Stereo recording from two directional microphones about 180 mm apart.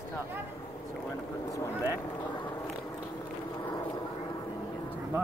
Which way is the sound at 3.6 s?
20° left (ahead or behind).